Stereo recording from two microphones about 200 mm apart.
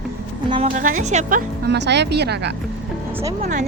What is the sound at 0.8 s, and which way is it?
Speech, 40° right (ahead or behind).